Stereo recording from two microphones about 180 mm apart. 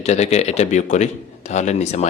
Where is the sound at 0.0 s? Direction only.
40° left (ahead or behind).